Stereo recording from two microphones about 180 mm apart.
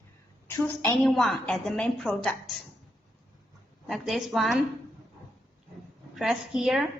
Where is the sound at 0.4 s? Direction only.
10° left (ahead or behind).